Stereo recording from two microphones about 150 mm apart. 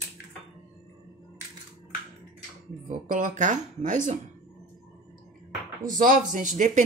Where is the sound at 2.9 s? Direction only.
60° right (ahead or behind).